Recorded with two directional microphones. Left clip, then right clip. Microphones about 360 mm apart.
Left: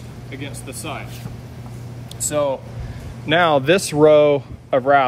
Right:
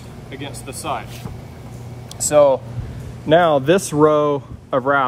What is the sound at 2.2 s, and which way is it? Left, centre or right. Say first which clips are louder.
Speech: right 8 dB; right.